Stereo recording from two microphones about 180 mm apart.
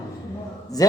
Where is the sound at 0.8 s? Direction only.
20° left (ahead or behind).